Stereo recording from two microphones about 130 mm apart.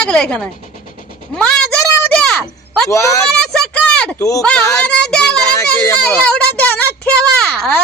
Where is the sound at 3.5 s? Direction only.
5° left (ahead or behind).